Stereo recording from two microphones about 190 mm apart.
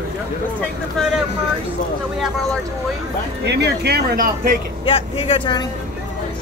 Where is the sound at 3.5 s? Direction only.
60° right (ahead or behind).